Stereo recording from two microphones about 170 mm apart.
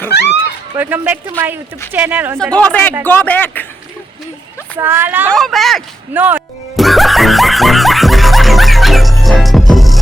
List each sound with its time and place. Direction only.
0.3 s a sound: 10° right (ahead or behind)
1.9 s speech: 10° right (ahead or behind)
2.4 s speech: 5° left (ahead or behind)
4.8 s speech: 10° right (ahead or behind)
5.3 s speech: centre (ahead or behind)
6.1 s speech: 10° right (ahead or behind)
6.7 s music: centre (ahead or behind)